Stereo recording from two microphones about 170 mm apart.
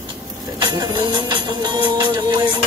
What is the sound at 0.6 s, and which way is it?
Music, 25° right (ahead or behind).